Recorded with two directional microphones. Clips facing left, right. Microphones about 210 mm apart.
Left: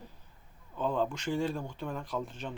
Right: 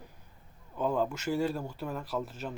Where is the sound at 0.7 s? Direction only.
10° right (ahead or behind).